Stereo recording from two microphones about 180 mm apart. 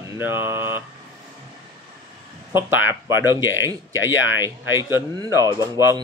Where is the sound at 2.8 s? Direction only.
15° right (ahead or behind).